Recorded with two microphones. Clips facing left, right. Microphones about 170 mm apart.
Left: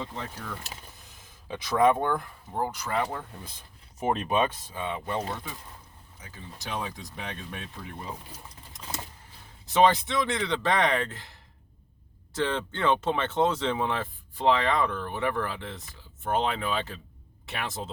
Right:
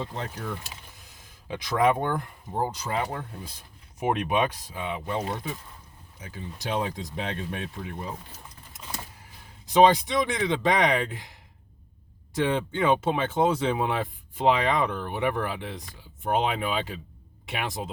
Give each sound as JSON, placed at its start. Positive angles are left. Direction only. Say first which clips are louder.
{"t": 1.5, "sound": "speech", "louder": "left 1 dB", "side_deg": -15}
{"t": 9.6, "sound": "speech", "louder": "right 3 dB", "side_deg": -15}